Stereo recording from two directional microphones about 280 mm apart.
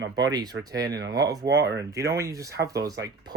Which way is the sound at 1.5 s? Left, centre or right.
Right.